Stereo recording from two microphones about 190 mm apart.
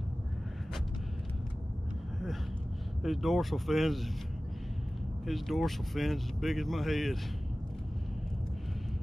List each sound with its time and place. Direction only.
3.0 s speech: centre (ahead or behind)
5.2 s speech: centre (ahead or behind)